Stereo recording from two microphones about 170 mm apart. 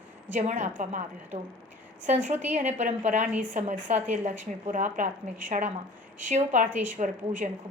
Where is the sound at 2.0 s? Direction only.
45° right (ahead or behind).